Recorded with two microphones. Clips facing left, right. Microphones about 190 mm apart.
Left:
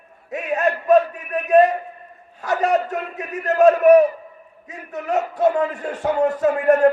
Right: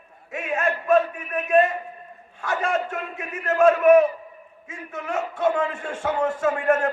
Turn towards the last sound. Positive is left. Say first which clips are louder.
# left 5 dB
turn(degrees=35)  # may be behind; listen again after turning